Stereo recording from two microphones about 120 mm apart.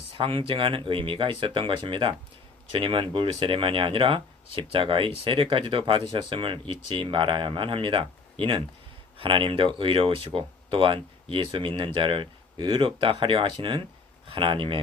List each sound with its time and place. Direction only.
0.2 s speech: 50° right (ahead or behind)